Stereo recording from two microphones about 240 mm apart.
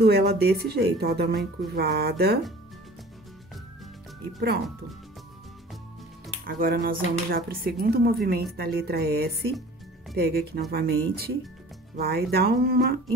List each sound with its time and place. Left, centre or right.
0.0 s speech: right
6.4 s speech: right